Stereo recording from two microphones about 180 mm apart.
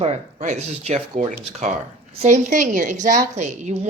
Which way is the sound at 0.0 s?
40° right (ahead or behind).